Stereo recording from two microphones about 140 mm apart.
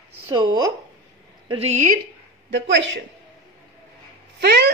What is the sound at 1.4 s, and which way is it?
Speech, 45° right (ahead or behind).